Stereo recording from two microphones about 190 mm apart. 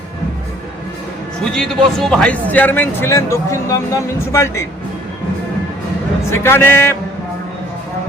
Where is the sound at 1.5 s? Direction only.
5° left (ahead or behind).